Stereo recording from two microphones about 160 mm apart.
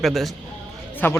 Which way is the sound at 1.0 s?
15° left (ahead or behind).